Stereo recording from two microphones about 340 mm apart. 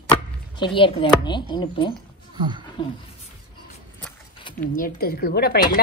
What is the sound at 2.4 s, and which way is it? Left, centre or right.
Speech, centre.